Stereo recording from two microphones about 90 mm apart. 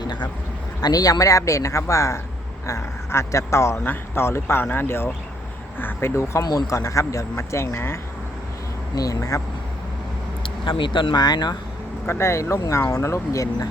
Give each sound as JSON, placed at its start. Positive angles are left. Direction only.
{"t": 0.0, "sound": "a sound", "side_deg": 55}
{"t": 0.8, "sound": "speech", "side_deg": 45}
{"t": 6.4, "sound": "speech", "side_deg": 45}
{"t": 9.0, "sound": "speech", "side_deg": 40}
{"t": 10.4, "sound": "speech", "side_deg": 70}
{"t": 12.0, "sound": "speech", "side_deg": 30}